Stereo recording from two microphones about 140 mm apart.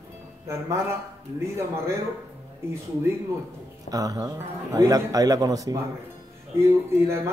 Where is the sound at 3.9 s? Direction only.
25° right (ahead or behind).